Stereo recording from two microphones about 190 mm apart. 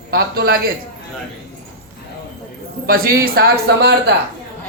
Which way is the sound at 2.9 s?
50° right (ahead or behind).